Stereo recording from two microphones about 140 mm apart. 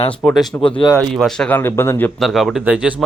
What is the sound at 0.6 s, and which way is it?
Speech, 35° left (ahead or behind).